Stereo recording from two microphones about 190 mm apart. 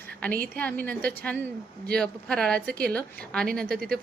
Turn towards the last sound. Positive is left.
turn(degrees=5)  # may be behind; listen again after turning